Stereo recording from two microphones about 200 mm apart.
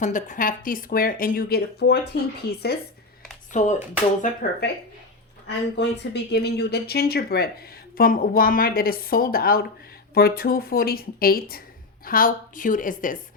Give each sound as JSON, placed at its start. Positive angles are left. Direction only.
{"t": 0.0, "sound": "speech", "side_deg": 40}
{"t": 3.5, "sound": "a woman's voice", "side_deg": 40}
{"t": 5.5, "sound": "a woman's voice", "side_deg": 60}